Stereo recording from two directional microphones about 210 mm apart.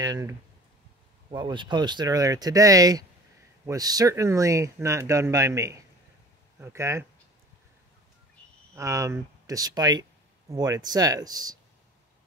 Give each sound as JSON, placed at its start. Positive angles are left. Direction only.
{"t": 0.0, "sound": "speech", "side_deg": -15}
{"t": 8.7, "sound": "speech", "side_deg": -15}